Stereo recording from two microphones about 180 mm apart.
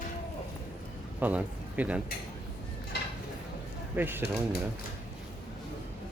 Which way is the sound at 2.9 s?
65° left (ahead or behind).